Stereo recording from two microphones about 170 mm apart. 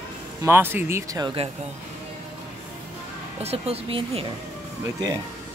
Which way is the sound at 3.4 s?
35° right (ahead or behind).